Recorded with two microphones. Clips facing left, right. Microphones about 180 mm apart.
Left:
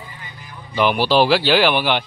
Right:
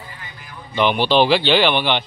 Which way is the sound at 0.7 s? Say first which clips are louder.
Even; 5° left (ahead or behind).